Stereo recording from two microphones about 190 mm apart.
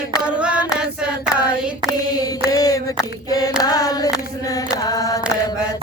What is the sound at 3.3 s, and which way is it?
Singing, 20° left (ahead or behind).